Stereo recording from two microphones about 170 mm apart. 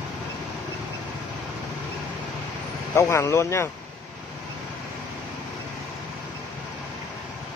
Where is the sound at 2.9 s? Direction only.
15° left (ahead or behind).